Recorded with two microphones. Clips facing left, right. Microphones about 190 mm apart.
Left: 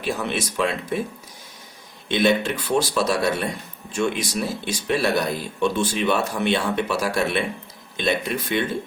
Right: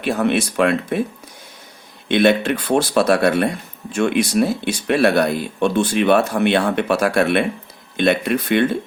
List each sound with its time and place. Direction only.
0.0 s speech: 60° right (ahead or behind)
2.0 s speech: 60° right (ahead or behind)